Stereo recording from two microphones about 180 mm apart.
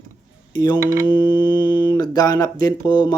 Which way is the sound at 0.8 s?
15° right (ahead or behind).